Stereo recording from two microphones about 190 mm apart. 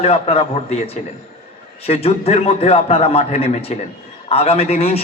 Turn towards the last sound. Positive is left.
turn(degrees=30)  # may be behind; listen again after turning